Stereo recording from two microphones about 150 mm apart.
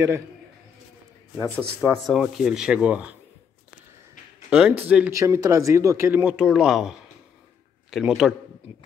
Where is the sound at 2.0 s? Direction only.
Centre (ahead or behind).